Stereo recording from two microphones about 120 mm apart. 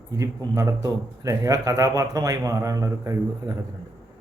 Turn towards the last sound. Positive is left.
turn(degrees=-30)  # may be behind; listen again after turning